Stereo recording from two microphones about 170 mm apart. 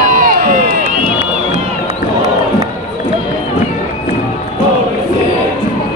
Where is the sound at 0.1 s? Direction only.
55° right (ahead or behind).